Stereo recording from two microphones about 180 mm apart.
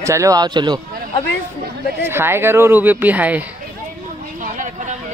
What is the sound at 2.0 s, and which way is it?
Speech, 15° right (ahead or behind).